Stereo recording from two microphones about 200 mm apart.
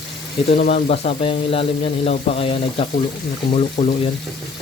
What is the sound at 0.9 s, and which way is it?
Speech, 30° left (ahead or behind).